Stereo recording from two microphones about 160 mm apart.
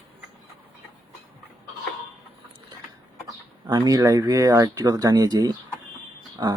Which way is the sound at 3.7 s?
25° right (ahead or behind).